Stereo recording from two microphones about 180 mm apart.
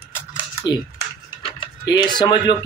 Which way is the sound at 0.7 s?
25° left (ahead or behind).